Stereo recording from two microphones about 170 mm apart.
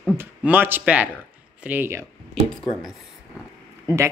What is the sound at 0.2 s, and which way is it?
Speech, 10° right (ahead or behind).